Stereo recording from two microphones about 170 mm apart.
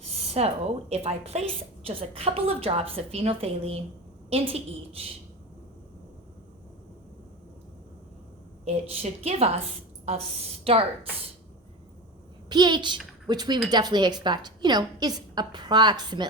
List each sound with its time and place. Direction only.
0.2 s a woman's voice: 35° right (ahead or behind)
8.6 s a woman's voice: 35° right (ahead or behind)
12.5 s a woman's voice: 25° right (ahead or behind)